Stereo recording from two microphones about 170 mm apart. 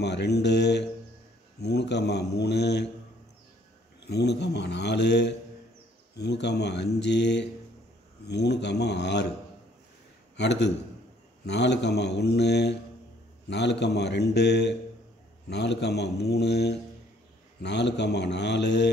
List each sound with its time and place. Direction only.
0.0 s a man's voice: 80° left
4.0 s a man's voice: 80° left
10.3 s a man's voice: 90° left
17.6 s speech: 90° left